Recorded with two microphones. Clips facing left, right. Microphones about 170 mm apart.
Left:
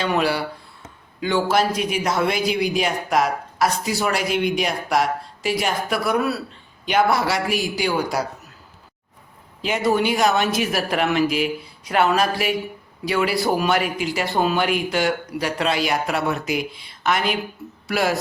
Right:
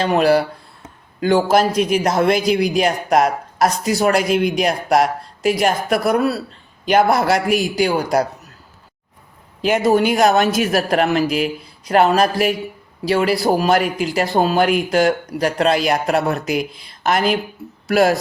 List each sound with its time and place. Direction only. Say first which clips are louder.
0.0 s speech: right 7 dB; 40° right (ahead or behind)
1.7 s a man's voice: right 7 dB; centre (ahead or behind)
2.0 s speech: right 3 dB; 40° right (ahead or behind)
9.6 s speech: right 5 dB; 50° right (ahead or behind)